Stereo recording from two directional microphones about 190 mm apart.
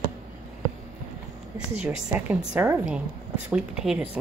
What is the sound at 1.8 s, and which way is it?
A woman's voice, 5° right (ahead or behind).